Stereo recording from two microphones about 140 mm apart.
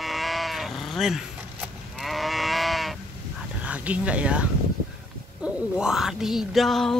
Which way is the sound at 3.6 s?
10° right (ahead or behind).